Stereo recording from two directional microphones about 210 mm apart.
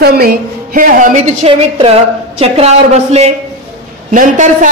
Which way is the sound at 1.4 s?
25° right (ahead or behind).